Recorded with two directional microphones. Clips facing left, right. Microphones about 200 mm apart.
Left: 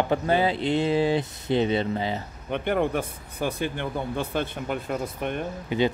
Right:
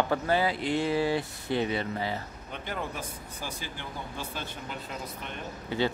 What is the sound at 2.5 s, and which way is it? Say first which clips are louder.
Speech: left 12 dB; 60° left (ahead or behind).